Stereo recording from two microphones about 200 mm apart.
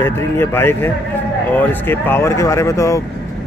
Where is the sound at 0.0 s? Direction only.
10° left (ahead or behind).